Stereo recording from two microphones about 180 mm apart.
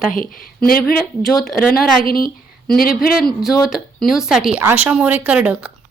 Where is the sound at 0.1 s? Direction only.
50° left (ahead or behind).